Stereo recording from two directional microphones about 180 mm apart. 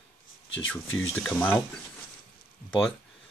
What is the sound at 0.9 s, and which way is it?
Speech, 5° left (ahead or behind).